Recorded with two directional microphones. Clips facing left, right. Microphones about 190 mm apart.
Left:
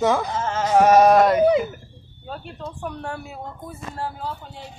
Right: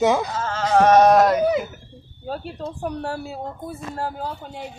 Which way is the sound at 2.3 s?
35° right (ahead or behind).